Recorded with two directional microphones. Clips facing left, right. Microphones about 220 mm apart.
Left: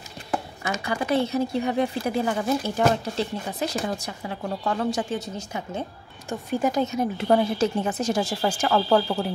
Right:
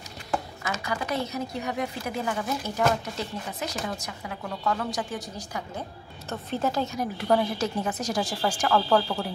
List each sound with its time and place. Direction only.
0.8 s speech: 30° left (ahead or behind)
6.2 s speech: 15° left (ahead or behind)